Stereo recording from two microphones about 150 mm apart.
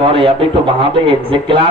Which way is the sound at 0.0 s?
35° right (ahead or behind).